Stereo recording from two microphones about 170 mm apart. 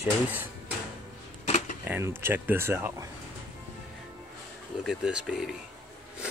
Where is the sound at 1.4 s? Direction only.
45° left (ahead or behind).